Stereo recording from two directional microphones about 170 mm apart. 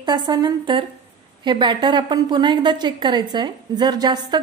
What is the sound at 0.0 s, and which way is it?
A woman's voice, 25° right (ahead or behind).